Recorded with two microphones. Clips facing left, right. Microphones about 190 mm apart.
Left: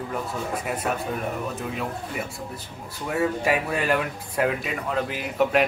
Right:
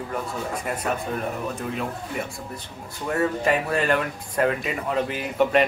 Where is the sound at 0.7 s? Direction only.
5° left (ahead or behind).